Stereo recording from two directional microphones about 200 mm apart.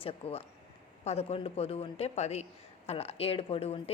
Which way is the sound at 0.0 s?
30° left (ahead or behind).